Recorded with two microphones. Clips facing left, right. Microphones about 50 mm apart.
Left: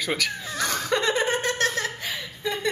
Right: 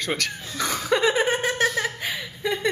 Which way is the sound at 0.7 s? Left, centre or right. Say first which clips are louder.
Right 3 dB; centre.